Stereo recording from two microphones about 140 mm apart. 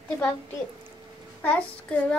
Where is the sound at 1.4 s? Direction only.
10° left (ahead or behind).